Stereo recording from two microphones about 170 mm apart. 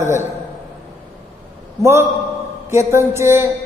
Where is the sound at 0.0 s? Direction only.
15° right (ahead or behind).